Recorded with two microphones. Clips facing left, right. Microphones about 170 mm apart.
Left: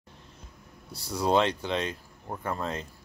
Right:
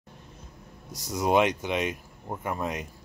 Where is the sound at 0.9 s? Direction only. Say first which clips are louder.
Right 1 dB; 20° right (ahead or behind).